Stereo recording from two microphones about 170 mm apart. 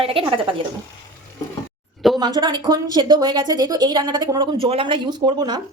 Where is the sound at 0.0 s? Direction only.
30° right (ahead or behind).